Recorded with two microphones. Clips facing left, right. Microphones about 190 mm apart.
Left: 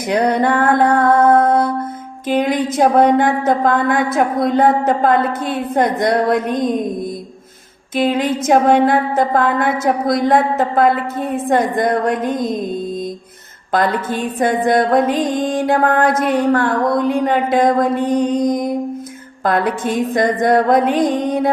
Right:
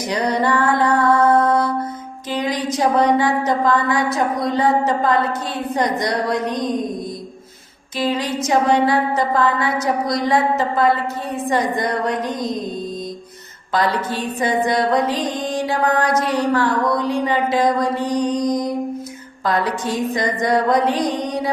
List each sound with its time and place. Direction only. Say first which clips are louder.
0.1 s music: left 4 dB; 55° left (ahead or behind)
2.3 s speech: left 5 dB; 55° left (ahead or behind)
7.9 s speech: left 5 dB; 55° left (ahead or behind)
13.7 s speech: left 3 dB; 50° left (ahead or behind)